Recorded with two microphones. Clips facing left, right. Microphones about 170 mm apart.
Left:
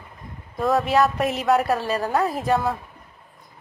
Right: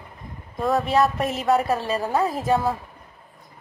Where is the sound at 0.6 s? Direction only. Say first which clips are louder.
Left 1 dB; centre (ahead or behind).